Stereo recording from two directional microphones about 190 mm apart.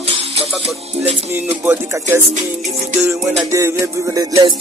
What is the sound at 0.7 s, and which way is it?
Music, 5° right (ahead or behind).